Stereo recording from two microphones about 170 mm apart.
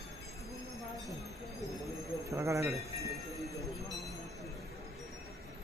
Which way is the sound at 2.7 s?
20° right (ahead or behind).